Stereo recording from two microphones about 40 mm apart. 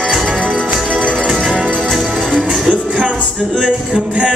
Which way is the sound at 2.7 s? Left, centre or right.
Right.